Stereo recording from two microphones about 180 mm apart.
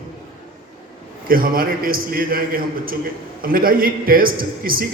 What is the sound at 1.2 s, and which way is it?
A man's voice, 55° right (ahead or behind).